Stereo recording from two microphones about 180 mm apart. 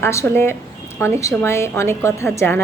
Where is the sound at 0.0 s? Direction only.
15° left (ahead or behind).